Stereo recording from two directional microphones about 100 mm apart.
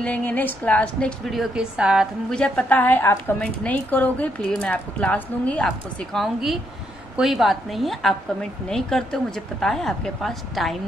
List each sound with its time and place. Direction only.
0.0 s speech: 15° left (ahead or behind)
1.3 s a woman's voice: 5° right (ahead or behind)
2.2 s speech: 10° left (ahead or behind)
6.1 s a woman's voice: centre (ahead or behind)